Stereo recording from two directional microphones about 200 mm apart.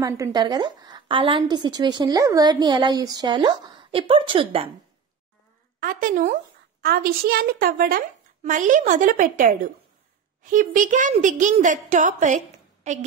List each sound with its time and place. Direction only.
0.0 s a woman's voice: 20° right (ahead or behind)
5.8 s a woman's voice: 45° right (ahead or behind)